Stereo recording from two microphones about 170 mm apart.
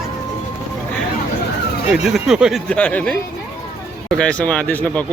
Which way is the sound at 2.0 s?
5° right (ahead or behind).